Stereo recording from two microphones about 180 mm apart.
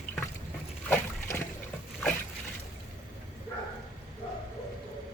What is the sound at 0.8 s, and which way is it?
Boat, 15° left (ahead or behind).